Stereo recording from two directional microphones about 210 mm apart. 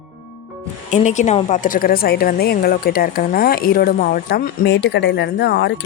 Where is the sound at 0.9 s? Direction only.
35° left (ahead or behind).